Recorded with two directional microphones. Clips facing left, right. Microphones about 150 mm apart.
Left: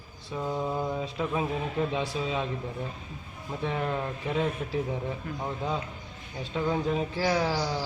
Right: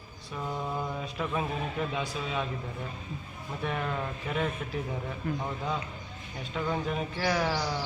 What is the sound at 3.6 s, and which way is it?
Speech, 20° left (ahead or behind).